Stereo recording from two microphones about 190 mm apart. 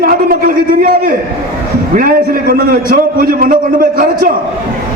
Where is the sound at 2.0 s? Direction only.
50° right (ahead or behind).